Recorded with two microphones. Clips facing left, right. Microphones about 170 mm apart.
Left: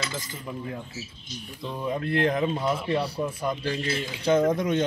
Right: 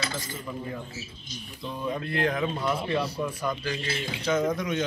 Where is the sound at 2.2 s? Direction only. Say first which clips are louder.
Left 1 dB; 25° left (ahead or behind).